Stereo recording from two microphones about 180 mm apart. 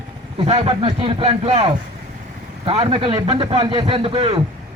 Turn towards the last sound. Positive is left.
turn(degrees=-30)  # may be behind; listen again after turning